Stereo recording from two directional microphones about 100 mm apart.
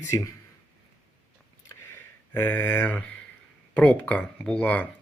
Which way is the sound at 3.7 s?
10° left (ahead or behind).